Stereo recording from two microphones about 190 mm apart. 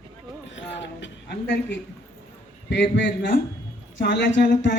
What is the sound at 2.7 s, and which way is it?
Speech, 65° left (ahead or behind).